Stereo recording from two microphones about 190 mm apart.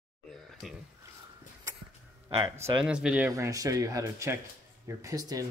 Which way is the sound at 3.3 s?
15° right (ahead or behind).